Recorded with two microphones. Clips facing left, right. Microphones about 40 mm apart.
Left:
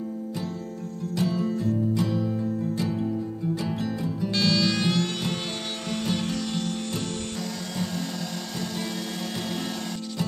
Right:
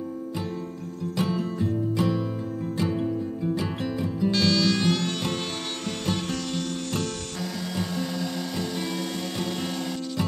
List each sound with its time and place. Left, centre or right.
1.1 s music: right
3.6 s music: right
4.3 s music: centre